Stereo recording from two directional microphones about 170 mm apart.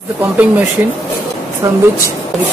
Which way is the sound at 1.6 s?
25° right (ahead or behind).